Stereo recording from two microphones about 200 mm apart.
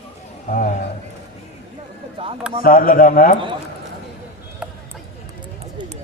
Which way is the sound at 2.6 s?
45° left (ahead or behind).